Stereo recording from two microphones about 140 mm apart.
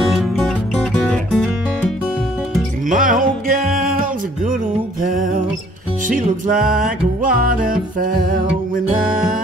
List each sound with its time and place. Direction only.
0.0 s music: centre (ahead or behind)
2.9 s music: 75° right (ahead or behind)
5.0 s music: 75° right (ahead or behind)
7.2 s music: 80° right